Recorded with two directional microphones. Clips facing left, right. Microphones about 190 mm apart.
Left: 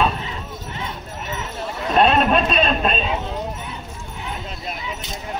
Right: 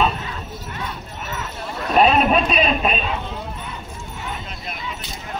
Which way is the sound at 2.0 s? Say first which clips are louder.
Right 1 dB; 5° right (ahead or behind).